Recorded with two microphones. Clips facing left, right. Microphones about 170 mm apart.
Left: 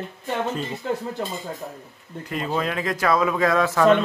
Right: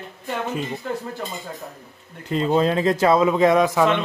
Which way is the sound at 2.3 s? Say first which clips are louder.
Right 7 dB; 25° right (ahead or behind).